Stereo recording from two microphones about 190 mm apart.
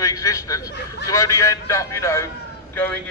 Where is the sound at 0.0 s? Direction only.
15° left (ahead or behind).